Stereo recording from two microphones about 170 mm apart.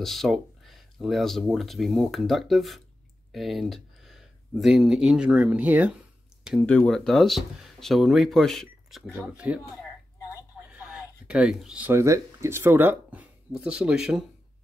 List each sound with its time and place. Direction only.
0.0 s speech: centre (ahead or behind)
6.6 s speech: 10° left (ahead or behind)
10.7 s speech: 5° right (ahead or behind)